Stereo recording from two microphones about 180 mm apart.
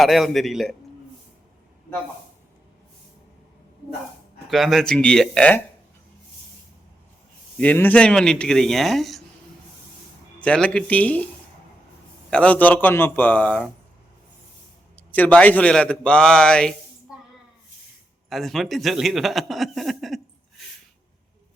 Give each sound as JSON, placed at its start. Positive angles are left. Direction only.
{"t": 0.0, "sound": "a man's voice", "side_deg": 0}
{"t": 4.4, "sound": "a man's voice", "side_deg": 0}
{"t": 7.6, "sound": "a man's voice", "side_deg": 10}
{"t": 10.4, "sound": "a man's voice", "side_deg": 5}
{"t": 12.3, "sound": "a man's voice", "side_deg": 5}
{"t": 14.9, "sound": "a man's voice", "side_deg": 10}
{"t": 18.3, "sound": "speech", "side_deg": 0}